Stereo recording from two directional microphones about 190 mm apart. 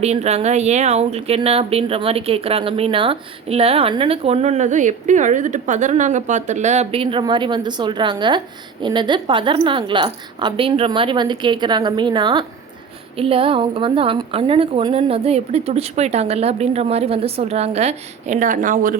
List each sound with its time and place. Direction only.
0.0 s a woman's voice: 35° right (ahead or behind)